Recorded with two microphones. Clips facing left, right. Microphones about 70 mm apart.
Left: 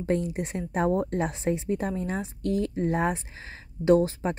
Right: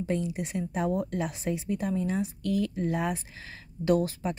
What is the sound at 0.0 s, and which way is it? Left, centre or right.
A woman's voice, left.